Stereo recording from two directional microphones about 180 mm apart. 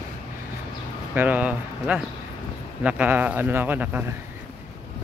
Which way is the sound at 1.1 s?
10° right (ahead or behind).